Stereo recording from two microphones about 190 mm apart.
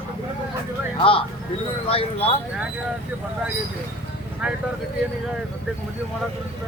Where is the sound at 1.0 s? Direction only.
30° left (ahead or behind).